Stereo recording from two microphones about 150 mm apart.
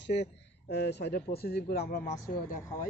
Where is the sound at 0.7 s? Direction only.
90° left.